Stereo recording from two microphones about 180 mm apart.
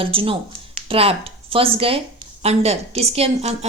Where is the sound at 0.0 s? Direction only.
30° right (ahead or behind).